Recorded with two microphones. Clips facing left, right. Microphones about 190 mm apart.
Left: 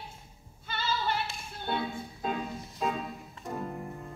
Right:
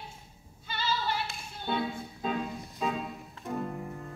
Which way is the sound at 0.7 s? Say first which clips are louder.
Even; 50° left (ahead or behind).